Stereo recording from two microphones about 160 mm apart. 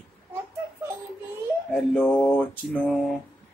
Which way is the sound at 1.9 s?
10° left (ahead or behind).